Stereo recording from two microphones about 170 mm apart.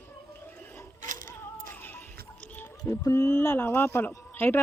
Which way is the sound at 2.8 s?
20° left (ahead or behind).